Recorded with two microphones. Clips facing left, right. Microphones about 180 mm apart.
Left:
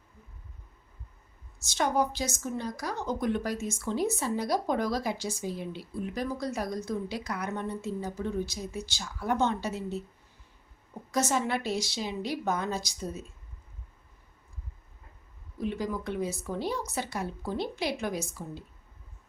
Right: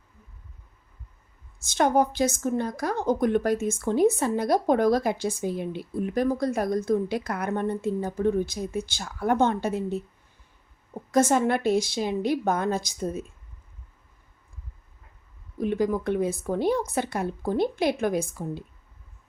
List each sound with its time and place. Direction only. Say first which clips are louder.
1.6 s a woman's voice: right 6 dB; 55° right (ahead or behind)
11.1 s a woman's voice: right 7 dB; 50° right (ahead or behind)
15.5 s a woman's voice: right 7 dB; 55° right (ahead or behind)